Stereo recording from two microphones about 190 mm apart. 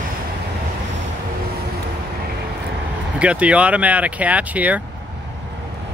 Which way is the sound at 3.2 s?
5° right (ahead or behind).